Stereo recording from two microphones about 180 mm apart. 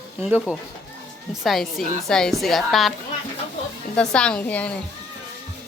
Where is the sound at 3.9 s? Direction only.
5° left (ahead or behind).